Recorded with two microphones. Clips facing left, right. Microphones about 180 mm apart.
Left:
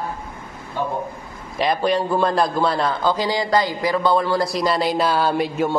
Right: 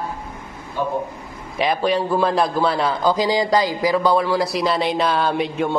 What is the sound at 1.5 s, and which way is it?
Speech, centre (ahead or behind).